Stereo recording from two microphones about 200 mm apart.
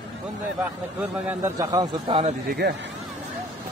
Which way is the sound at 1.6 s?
15° right (ahead or behind).